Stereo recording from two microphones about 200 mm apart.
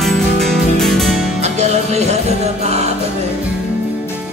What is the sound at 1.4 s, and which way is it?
Music, 35° right (ahead or behind).